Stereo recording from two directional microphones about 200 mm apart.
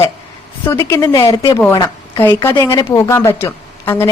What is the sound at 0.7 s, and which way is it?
A woman's voice, 15° left (ahead or behind).